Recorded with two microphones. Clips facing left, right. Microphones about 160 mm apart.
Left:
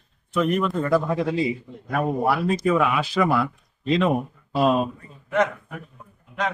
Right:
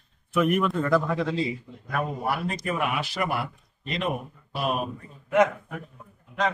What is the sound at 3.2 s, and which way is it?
Speech, 90° left.